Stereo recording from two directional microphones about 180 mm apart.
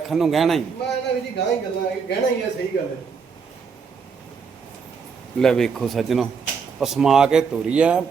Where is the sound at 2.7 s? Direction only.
60° left (ahead or behind).